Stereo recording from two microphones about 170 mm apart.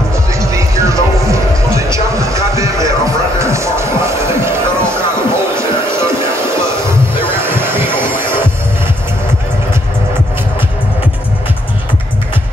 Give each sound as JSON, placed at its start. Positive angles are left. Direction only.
{"t": 0.4, "sound": "music", "side_deg": -20}
{"t": 1.9, "sound": "a sound", "side_deg": -20}
{"t": 3.3, "sound": "music", "side_deg": -15}
{"t": 7.3, "sound": "music", "side_deg": -15}